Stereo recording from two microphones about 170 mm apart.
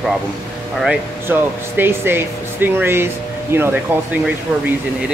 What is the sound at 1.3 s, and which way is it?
Speech, 15° right (ahead or behind).